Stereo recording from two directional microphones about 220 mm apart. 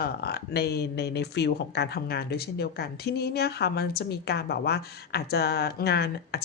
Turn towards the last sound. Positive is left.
turn(degrees=45)  # may be behind; listen again after turning